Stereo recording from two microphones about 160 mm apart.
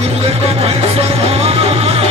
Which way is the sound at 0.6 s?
40° right (ahead or behind).